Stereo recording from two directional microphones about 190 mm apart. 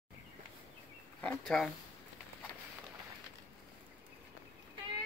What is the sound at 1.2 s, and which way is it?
Speech, 5° left (ahead or behind).